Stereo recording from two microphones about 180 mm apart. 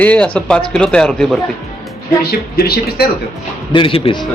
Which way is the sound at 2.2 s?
60° left (ahead or behind).